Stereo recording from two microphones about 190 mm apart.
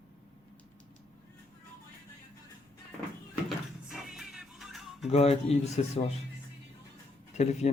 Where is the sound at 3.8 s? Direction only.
Centre (ahead or behind).